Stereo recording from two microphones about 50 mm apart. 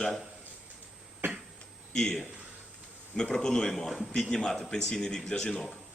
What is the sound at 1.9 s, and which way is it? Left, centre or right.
A man's voice, centre.